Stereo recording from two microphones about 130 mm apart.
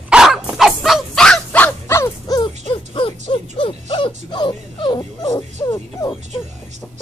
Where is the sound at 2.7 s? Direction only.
40° left (ahead or behind).